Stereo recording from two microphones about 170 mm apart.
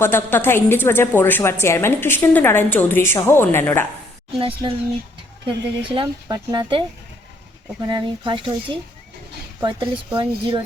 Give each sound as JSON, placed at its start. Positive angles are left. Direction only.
{"t": 0.0, "sound": "a woman's voice", "side_deg": 15}
{"t": 4.4, "sound": "speech", "side_deg": -30}
{"t": 7.9, "sound": "speech", "side_deg": -25}